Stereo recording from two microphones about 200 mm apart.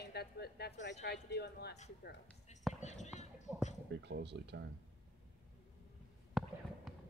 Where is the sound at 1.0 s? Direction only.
55° left (ahead or behind).